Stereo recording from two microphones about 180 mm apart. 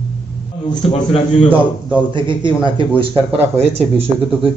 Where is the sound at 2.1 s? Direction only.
25° right (ahead or behind).